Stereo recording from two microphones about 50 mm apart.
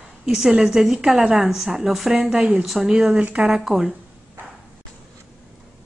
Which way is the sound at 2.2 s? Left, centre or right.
Right.